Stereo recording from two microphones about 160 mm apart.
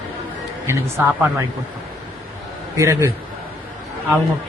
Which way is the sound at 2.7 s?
20° right (ahead or behind).